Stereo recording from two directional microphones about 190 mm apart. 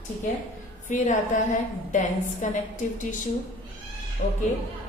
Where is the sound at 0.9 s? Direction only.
40° left (ahead or behind).